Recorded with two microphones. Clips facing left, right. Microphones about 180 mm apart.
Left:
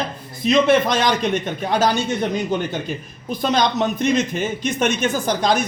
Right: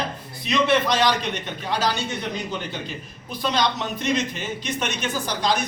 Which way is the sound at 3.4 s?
50° left (ahead or behind).